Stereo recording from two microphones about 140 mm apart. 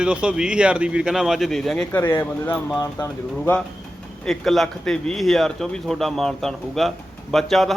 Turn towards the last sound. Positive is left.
turn(degrees=0)  # may be behind; listen again after turning